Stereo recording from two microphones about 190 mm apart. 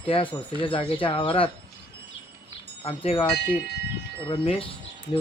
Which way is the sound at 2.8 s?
30° left (ahead or behind).